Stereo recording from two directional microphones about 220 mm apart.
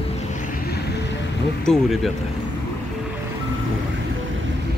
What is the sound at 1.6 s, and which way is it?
Speech, centre (ahead or behind).